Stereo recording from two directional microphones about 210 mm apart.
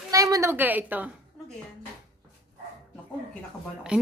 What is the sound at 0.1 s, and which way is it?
A woman's voice, 15° right (ahead or behind).